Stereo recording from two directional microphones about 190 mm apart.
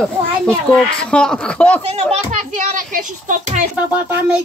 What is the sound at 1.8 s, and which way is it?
A child's voice, 35° right (ahead or behind).